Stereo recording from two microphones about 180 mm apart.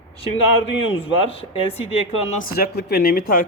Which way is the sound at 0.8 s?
30° left (ahead or behind).